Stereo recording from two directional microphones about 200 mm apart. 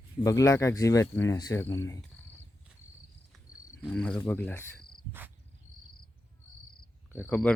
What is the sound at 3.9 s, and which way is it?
Speech, 5° left (ahead or behind).